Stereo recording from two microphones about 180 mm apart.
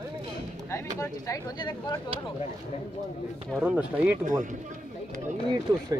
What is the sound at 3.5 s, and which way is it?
Speech, 10° right (ahead or behind).